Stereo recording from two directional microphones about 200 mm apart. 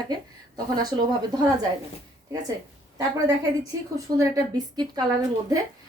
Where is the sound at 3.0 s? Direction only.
15° right (ahead or behind).